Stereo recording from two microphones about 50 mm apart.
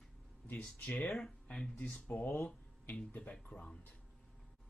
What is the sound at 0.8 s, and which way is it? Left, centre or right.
Speech, left.